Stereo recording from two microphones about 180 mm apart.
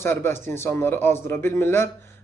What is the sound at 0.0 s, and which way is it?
A man's voice, 15° left (ahead or behind).